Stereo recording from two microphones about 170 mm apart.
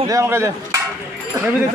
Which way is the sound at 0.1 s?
15° right (ahead or behind).